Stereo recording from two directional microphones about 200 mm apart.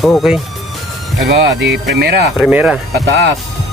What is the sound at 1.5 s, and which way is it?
Speech, 60° right (ahead or behind).